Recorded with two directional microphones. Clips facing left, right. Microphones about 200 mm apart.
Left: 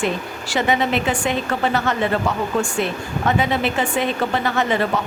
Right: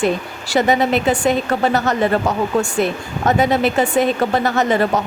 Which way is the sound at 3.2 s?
40° right (ahead or behind).